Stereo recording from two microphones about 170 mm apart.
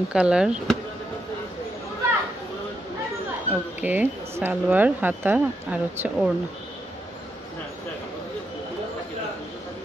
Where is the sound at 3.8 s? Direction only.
10° right (ahead or behind).